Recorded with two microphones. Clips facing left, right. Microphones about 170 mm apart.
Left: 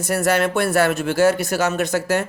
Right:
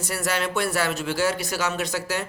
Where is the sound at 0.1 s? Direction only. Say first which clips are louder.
Left 8 dB; 50° left (ahead or behind).